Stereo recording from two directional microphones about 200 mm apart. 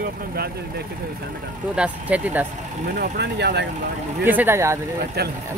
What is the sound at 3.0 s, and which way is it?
Speech, 55° right (ahead or behind).